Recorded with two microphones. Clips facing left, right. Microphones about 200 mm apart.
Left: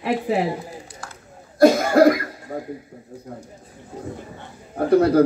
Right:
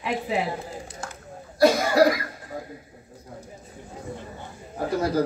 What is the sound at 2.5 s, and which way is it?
Speech, 55° left (ahead or behind).